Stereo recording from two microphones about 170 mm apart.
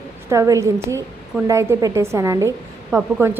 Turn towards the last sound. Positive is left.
turn(degrees=-15)  # may be behind; listen again after turning